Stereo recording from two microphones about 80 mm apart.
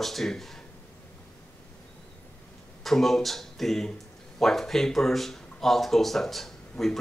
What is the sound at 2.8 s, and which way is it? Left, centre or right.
Speech, centre.